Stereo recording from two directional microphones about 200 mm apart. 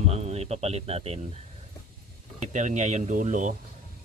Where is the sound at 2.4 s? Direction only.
35° right (ahead or behind).